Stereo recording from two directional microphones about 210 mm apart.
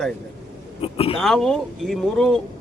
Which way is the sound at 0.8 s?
25° left (ahead or behind).